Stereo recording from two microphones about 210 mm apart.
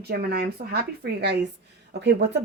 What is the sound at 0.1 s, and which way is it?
Speech, 50° right (ahead or behind).